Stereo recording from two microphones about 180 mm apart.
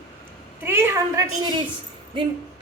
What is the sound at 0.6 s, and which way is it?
Speech, 10° right (ahead or behind).